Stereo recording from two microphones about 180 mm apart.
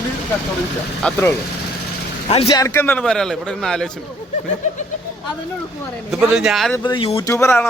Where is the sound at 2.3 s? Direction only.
30° left (ahead or behind).